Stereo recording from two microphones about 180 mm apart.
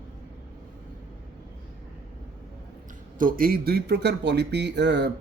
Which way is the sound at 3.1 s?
50° right (ahead or behind).